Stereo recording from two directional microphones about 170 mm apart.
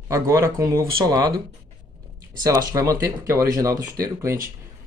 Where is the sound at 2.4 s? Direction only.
20° right (ahead or behind).